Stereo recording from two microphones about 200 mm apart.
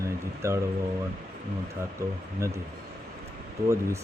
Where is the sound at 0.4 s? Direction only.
15° right (ahead or behind).